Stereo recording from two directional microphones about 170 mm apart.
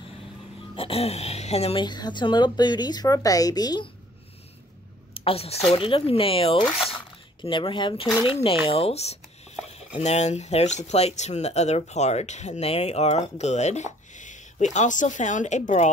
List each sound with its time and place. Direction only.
0.7 s a woman's voice: 35° left (ahead or behind)
5.1 s a woman's voice: 35° left (ahead or behind)